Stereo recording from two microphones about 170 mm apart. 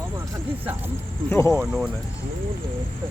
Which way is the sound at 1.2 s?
15° left (ahead or behind).